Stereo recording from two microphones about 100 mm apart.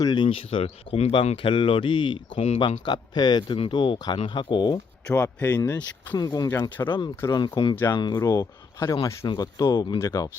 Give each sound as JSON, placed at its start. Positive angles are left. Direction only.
{"t": 0.0, "sound": "speech", "side_deg": 45}
{"t": 0.3, "sound": "speech", "side_deg": 70}
{"t": 5.0, "sound": "speech", "side_deg": 20}
{"t": 6.1, "sound": "speech", "side_deg": 40}
{"t": 6.5, "sound": "speech", "side_deg": 25}
{"t": 6.8, "sound": "speech", "side_deg": 50}
{"t": 7.2, "sound": "speech", "side_deg": 40}
{"t": 8.1, "sound": "speech", "side_deg": 35}
{"t": 9.2, "sound": "speech", "side_deg": 45}